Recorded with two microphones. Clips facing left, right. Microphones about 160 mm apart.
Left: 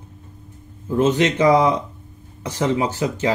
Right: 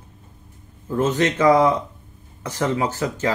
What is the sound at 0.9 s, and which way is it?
Speech, 20° left (ahead or behind).